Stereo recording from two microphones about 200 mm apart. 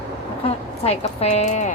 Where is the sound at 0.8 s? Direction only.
30° left (ahead or behind).